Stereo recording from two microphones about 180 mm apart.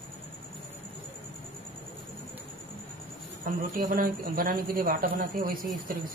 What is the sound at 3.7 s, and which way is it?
Speech, 55° right (ahead or behind).